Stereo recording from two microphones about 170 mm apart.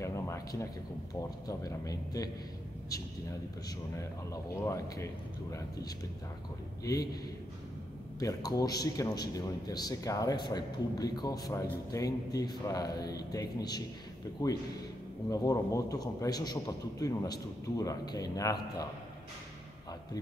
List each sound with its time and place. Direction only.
0.0 s a sound: 15° left (ahead or behind)
1.5 s a man's voice: 20° left (ahead or behind)
3.9 s a man's voice: 15° left (ahead or behind)
6.8 s a man's voice: 20° left (ahead or behind)
8.2 s a man's voice: 20° left (ahead or behind)